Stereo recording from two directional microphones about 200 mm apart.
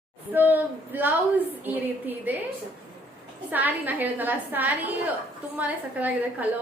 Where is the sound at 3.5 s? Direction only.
10° right (ahead or behind).